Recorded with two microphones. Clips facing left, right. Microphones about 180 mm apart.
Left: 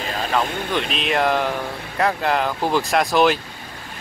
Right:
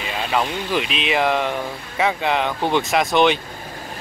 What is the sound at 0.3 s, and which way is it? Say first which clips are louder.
Speech: right 1 dB; 5° right (ahead or behind).